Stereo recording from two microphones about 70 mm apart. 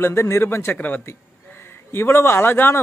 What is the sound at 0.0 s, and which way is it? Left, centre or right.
Speech, left.